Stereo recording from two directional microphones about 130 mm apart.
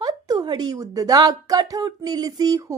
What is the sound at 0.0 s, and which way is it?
A woman's voice, 30° right (ahead or behind).